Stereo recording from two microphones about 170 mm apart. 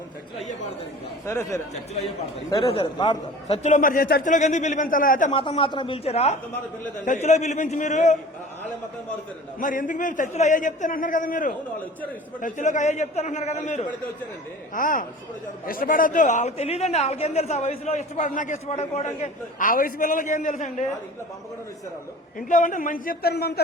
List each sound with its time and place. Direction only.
1.2 s speech: 15° left (ahead or behind)
2.6 s a man's voice: 35° left (ahead or behind); by 5.3 s 55° left (ahead or behind)
5.3 s a man's voice: 30° left (ahead or behind)
9.6 s a man's voice: 50° left (ahead or behind)
14.7 s a man's voice: 50° left (ahead or behind)
22.4 s a man's voice: 50° left (ahead or behind); by 23.6 s 70° left (ahead or behind)